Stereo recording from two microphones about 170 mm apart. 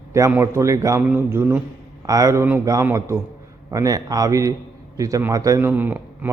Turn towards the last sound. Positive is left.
turn(degrees=-10)  # may be behind; listen again after turning